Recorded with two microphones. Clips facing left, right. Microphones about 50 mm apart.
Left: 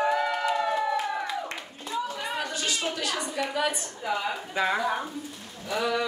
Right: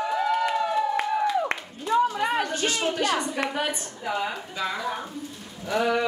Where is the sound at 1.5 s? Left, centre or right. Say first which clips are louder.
Right 9 dB; right.